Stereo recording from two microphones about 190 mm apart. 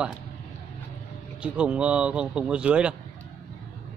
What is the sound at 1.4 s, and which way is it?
Speech, 5° right (ahead or behind).